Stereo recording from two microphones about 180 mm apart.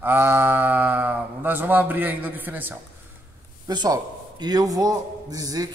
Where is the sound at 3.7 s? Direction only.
25° right (ahead or behind).